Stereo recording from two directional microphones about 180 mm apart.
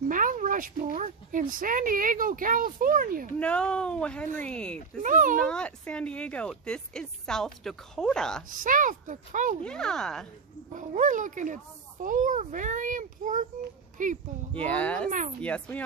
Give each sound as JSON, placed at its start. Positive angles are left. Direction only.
{"t": 0.1, "sound": "speech", "side_deg": -50}
{"t": 3.3, "sound": "speech", "side_deg": 5}
{"t": 5.0, "sound": "speech", "side_deg": -45}
{"t": 5.5, "sound": "speech", "side_deg": 5}
{"t": 8.5, "sound": "speech", "side_deg": -50}
{"t": 9.6, "sound": "speech", "side_deg": 5}
{"t": 10.7, "sound": "speech", "side_deg": -45}
{"t": 14.6, "sound": "a child's voice", "side_deg": 10}
{"t": 15.0, "sound": "speech", "side_deg": -45}
{"t": 15.4, "sound": "a child's voice", "side_deg": 10}